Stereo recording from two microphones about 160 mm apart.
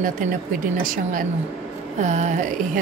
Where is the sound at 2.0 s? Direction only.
50° right (ahead or behind).